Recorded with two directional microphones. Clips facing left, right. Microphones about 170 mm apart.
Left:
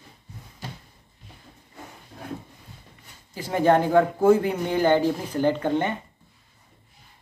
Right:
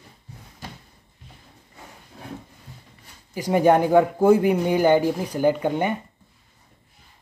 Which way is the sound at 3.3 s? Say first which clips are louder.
Right 2 dB; 15° right (ahead or behind).